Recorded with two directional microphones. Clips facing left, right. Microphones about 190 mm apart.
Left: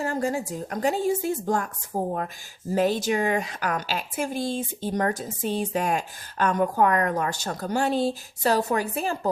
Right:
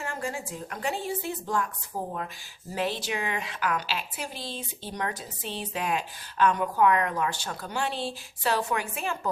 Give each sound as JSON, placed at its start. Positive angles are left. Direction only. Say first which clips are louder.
{"t": 0.0, "sound": "a woman's voice", "louder": "left 8 dB", "side_deg": 40}